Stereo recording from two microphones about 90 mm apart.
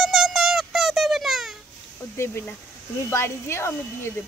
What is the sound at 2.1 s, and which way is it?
Speech, 25° left (ahead or behind).